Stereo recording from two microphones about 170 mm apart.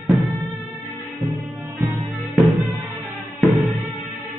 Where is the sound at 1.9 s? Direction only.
Centre (ahead or behind).